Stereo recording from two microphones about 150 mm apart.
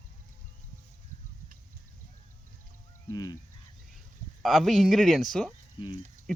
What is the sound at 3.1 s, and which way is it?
Goose, 25° left (ahead or behind).